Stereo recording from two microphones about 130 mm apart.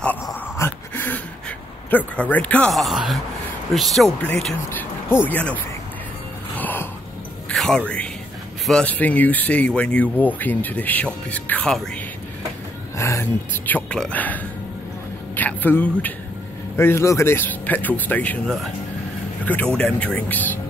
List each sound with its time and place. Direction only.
0.6 s dog: 15° left (ahead or behind)
1.9 s speech: 15° left (ahead or behind)
6.5 s a sound: 15° left (ahead or behind)
7.4 s music: 5° left (ahead or behind)
8.6 s speech: 10° left (ahead or behind)
12.9 s speech: 20° left (ahead or behind)
19.4 s speech: 10° left (ahead or behind)